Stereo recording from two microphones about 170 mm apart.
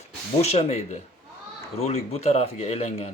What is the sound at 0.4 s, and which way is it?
Speech, 40° left (ahead or behind).